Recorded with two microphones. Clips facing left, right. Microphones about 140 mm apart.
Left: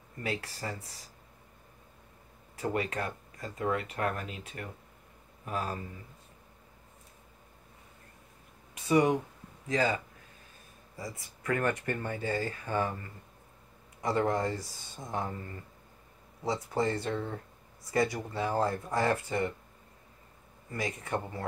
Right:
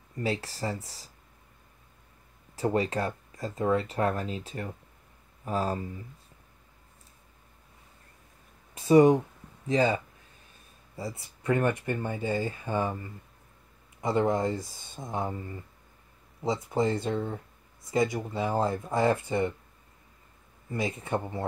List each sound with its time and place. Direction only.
0.2 s speech: 30° right (ahead or behind)
2.5 s speech: 30° right (ahead or behind)
8.7 s speech: 30° right (ahead or behind)
16.4 s speech: 20° right (ahead or behind)
20.7 s speech: 25° right (ahead or behind)